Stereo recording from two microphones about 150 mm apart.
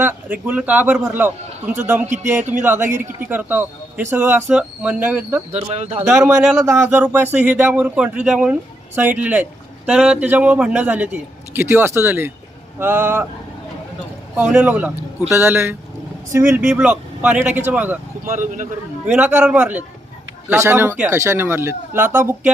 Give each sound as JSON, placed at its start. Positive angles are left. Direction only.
{"t": 0.0, "sound": "speech", "side_deg": -10}
{"t": 5.7, "sound": "a man's voice", "side_deg": -45}
{"t": 6.1, "sound": "speech", "side_deg": -20}
{"t": 6.4, "sound": "speech", "side_deg": 0}
{"t": 6.7, "sound": "speech", "side_deg": -15}
{"t": 14.3, "sound": "speech", "side_deg": -10}
{"t": 18.3, "sound": "speech", "side_deg": -60}
{"t": 19.0, "sound": "speech", "side_deg": -10}